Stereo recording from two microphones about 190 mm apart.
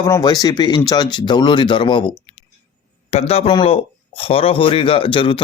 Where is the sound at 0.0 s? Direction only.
20° left (ahead or behind).